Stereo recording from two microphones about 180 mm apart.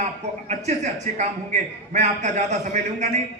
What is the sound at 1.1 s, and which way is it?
A man's voice, 40° right (ahead or behind).